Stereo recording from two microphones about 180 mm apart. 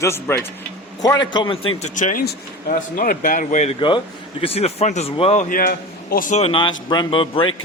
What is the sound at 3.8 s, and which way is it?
Speech, 25° left (ahead or behind).